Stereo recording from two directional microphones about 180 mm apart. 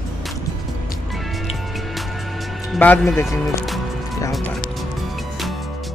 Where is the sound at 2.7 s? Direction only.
5° left (ahead or behind).